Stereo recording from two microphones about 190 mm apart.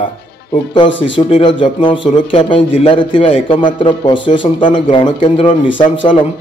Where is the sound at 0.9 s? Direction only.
75° left (ahead or behind).